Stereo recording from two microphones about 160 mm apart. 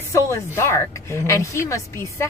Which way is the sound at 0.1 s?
15° left (ahead or behind).